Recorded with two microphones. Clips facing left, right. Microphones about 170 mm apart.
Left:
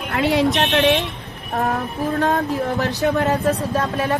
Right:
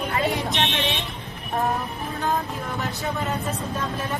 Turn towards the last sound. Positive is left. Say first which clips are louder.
# left 7 dB
turn(degrees=75)  # may be behind; listen again after turning